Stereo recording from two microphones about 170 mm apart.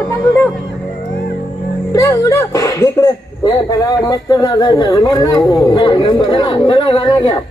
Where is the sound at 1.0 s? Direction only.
55° left (ahead or behind).